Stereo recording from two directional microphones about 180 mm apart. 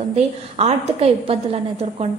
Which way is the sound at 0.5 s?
35° right (ahead or behind).